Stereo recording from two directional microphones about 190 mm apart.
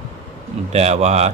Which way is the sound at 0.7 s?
35° right (ahead or behind).